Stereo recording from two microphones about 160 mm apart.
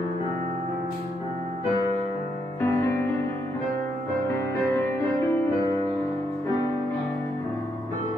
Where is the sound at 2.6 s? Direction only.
15° left (ahead or behind).